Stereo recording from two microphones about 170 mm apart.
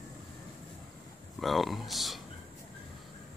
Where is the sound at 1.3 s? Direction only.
Centre (ahead or behind).